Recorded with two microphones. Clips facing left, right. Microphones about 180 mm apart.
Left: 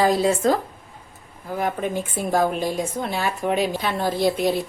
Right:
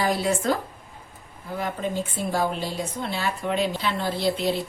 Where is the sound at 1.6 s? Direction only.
50° left (ahead or behind).